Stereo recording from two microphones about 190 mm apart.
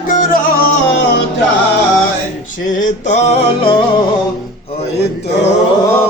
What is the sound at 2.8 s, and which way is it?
Male singing, 40° left (ahead or behind).